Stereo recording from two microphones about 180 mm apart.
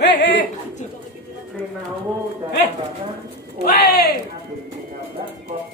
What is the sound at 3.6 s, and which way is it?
Speech, 60° left (ahead or behind).